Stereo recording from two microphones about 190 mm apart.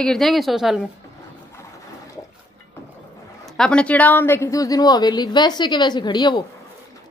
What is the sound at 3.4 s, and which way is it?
A woman's voice, 5° left (ahead or behind).